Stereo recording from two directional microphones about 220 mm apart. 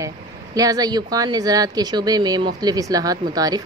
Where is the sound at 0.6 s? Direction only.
15° right (ahead or behind).